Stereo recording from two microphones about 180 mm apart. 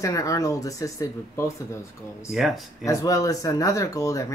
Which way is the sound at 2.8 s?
20° left (ahead or behind).